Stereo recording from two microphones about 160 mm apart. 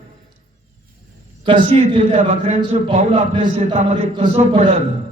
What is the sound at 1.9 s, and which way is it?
A man's voice, 45° right (ahead or behind).